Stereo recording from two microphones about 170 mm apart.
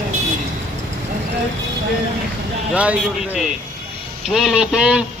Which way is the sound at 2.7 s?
10° right (ahead or behind).